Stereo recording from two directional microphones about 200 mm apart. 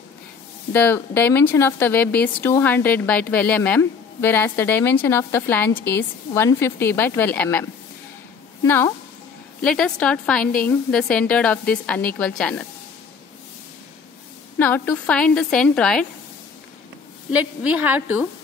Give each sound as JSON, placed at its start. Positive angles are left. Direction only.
{"t": 0.7, "sound": "speech", "side_deg": 10}
{"t": 8.6, "sound": "a woman's voice", "side_deg": 10}
{"t": 14.6, "sound": "a woman's voice", "side_deg": 10}
{"t": 17.3, "sound": "a woman's voice", "side_deg": -5}